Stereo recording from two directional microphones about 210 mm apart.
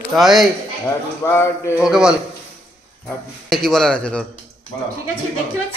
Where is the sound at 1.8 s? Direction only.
5° right (ahead or behind).